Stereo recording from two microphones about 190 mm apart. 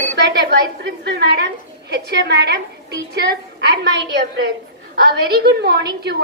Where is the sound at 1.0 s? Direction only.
60° right (ahead or behind).